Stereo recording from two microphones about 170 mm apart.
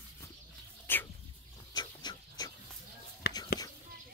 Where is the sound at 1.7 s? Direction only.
25° left (ahead or behind).